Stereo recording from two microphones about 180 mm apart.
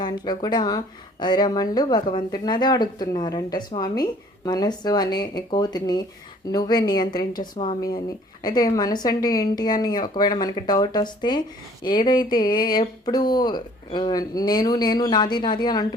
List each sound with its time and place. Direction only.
0.0 s speech: 25° left (ahead or behind)